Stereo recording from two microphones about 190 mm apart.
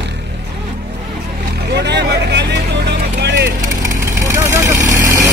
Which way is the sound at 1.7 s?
65° right (ahead or behind).